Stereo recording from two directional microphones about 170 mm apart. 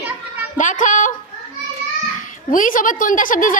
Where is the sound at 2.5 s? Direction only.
50° left (ahead or behind).